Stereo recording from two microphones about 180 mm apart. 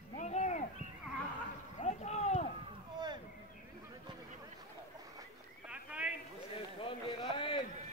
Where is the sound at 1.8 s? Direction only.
40° left (ahead or behind).